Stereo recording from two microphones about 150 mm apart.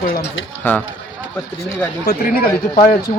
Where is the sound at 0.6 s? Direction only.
10° left (ahead or behind).